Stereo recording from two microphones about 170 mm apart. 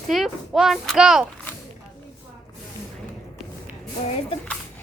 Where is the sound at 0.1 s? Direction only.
Centre (ahead or behind).